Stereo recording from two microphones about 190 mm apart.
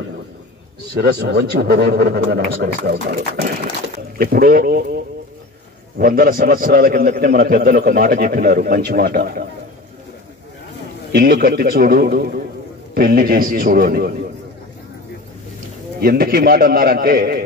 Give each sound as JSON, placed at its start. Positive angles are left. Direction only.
{"t": 0.9, "sound": "a man's voice", "side_deg": -55}
{"t": 11.1, "sound": "a man's voice", "side_deg": -55}
{"t": 16.0, "sound": "a man's voice", "side_deg": -55}